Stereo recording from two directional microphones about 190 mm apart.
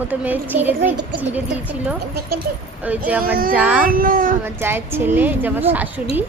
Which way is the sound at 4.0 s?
45° right (ahead or behind).